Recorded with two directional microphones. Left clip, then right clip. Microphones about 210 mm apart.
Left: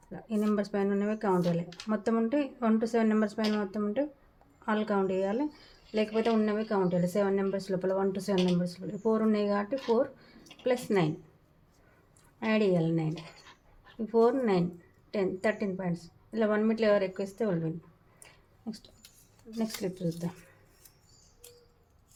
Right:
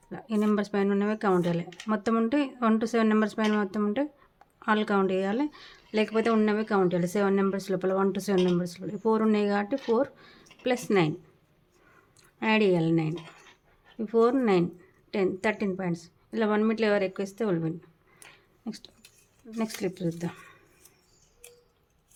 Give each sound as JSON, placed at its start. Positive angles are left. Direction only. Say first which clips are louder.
{"t": 0.1, "sound": "speech", "louder": "right 4 dB", "side_deg": -25}
{"t": 12.5, "sound": "speech", "louder": "right 4 dB", "side_deg": -30}